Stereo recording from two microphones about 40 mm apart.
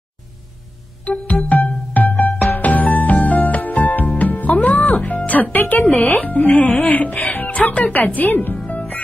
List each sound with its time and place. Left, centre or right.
1.2 s music: left
6.2 s speech: left
7.9 s a woman's voice: left
8.5 s music: left